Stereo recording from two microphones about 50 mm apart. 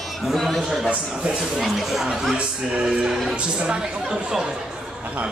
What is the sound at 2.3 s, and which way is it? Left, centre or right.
Speech, centre.